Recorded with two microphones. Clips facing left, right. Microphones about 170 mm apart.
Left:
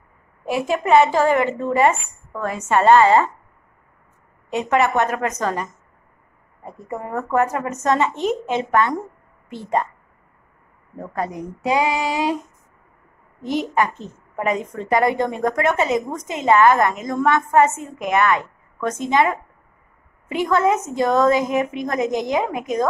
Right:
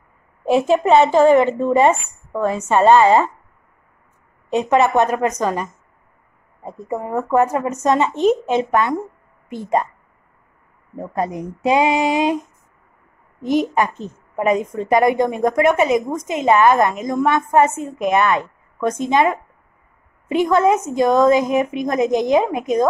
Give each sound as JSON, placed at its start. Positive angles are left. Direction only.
{"t": 0.5, "sound": "a woman's voice", "side_deg": -25}
{"t": 4.5, "sound": "a woman's voice", "side_deg": -20}
{"t": 11.0, "sound": "a woman's voice", "side_deg": -20}
{"t": 13.5, "sound": "a woman's voice", "side_deg": -15}